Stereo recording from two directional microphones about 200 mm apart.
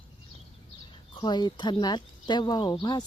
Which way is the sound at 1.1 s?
20° left (ahead or behind).